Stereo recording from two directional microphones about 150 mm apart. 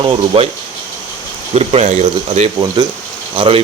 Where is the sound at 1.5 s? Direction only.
45° right (ahead or behind).